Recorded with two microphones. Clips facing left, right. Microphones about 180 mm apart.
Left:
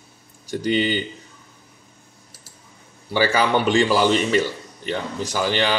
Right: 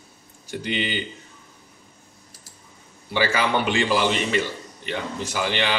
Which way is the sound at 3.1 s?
40° left (ahead or behind).